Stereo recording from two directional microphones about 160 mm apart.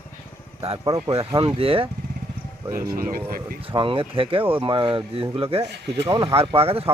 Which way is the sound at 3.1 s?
65° right (ahead or behind).